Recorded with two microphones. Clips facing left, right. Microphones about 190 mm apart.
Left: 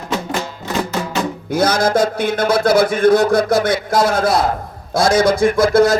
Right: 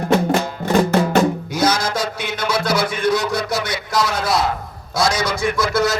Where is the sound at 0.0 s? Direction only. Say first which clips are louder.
Right 5 dB; 55° right (ahead or behind).